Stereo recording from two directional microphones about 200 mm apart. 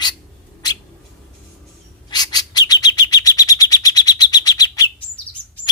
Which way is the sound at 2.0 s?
20° left (ahead or behind).